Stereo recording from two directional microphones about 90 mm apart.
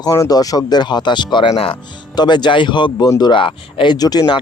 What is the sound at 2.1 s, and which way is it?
Speech, 55° left (ahead or behind).